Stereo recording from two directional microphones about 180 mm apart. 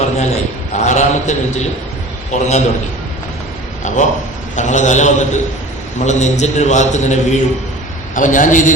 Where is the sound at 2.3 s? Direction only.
40° left (ahead or behind).